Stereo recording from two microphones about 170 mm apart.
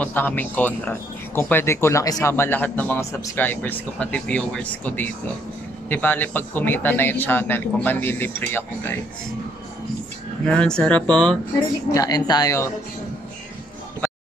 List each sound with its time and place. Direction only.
0.0 s a man's voice: 10° left (ahead or behind)
10.4 s a man's voice: 5° left (ahead or behind)
11.9 s a woman's voice: 20° left (ahead or behind)